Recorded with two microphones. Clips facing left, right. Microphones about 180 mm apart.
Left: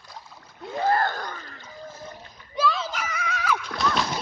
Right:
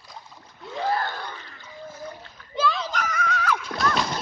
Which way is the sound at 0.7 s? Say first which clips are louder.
Left 3 dB; 50° left (ahead or behind).